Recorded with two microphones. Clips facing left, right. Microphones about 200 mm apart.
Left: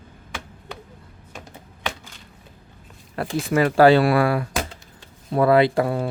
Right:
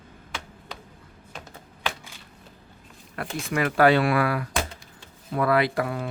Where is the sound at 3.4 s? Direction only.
30° left (ahead or behind).